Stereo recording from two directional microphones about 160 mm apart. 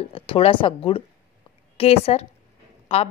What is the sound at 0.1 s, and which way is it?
A woman's voice, 35° left (ahead or behind).